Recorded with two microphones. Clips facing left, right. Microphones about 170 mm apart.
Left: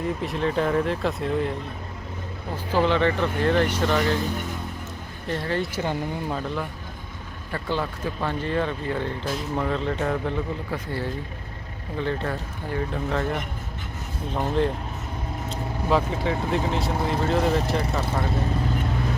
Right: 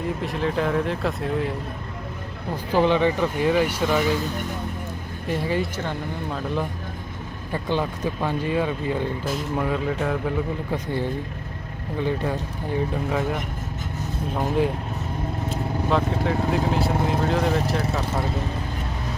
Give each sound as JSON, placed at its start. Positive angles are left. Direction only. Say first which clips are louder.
{"t": 0.0, "sound": "speech", "louder": "even", "side_deg": 0}
{"t": 2.7, "sound": "speech", "louder": "right 2 dB", "side_deg": -15}
{"t": 5.3, "sound": "speech", "louder": "right 2 dB", "side_deg": -10}
{"t": 7.5, "sound": "speech", "louder": "right 3 dB", "side_deg": -15}
{"t": 10.7, "sound": "speech", "louder": "right 3 dB", "side_deg": -15}
{"t": 15.9, "sound": "speech", "louder": "even", "side_deg": 0}